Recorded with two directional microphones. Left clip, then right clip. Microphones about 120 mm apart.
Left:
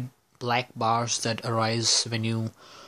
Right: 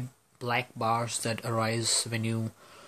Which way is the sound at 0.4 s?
25° left (ahead or behind).